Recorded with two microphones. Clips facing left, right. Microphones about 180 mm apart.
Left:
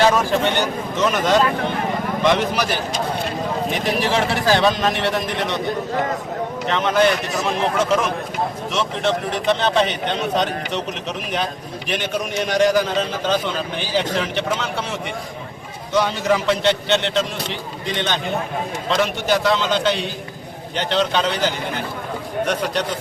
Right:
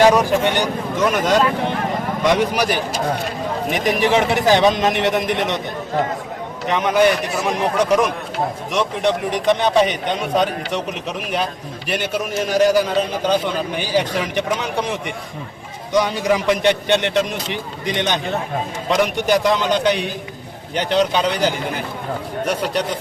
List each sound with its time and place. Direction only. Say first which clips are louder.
0.0 s a man's voice: right 3 dB; 15° right (ahead or behind)
6.7 s a man's voice: right 2 dB; 10° right (ahead or behind)
11.9 s a man's voice: right 2 dB; 10° right (ahead or behind)